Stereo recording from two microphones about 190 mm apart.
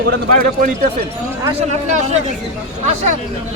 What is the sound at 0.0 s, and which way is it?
Speech, 45° right (ahead or behind).